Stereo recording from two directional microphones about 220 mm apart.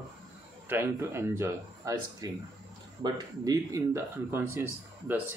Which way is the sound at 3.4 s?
15° right (ahead or behind).